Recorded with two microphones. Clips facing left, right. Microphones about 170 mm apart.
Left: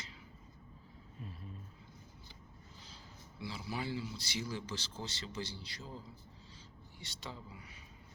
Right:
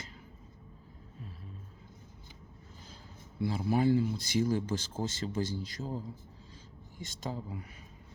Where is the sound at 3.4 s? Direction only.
50° right (ahead or behind).